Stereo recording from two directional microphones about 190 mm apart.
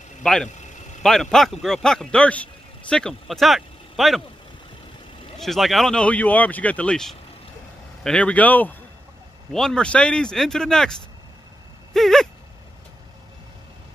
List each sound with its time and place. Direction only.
0.2 s speech: 5° left (ahead or behind)
0.5 s vehicle: 40° left (ahead or behind)
1.0 s a man's voice: centre (ahead or behind)
5.4 s speech: centre (ahead or behind)
11.9 s gasp: centre (ahead or behind)